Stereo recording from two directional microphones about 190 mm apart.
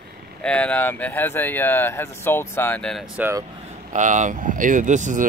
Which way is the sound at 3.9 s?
40° right (ahead or behind).